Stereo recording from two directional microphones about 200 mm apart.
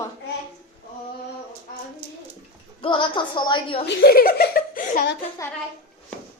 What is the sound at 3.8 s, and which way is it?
Speech, 50° left (ahead or behind).